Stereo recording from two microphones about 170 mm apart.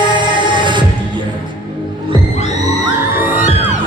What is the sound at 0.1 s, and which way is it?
Music, 30° right (ahead or behind).